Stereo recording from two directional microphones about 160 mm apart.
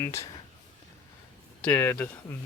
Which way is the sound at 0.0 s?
20° left (ahead or behind).